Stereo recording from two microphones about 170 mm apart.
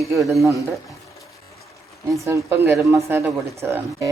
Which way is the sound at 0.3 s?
15° right (ahead or behind).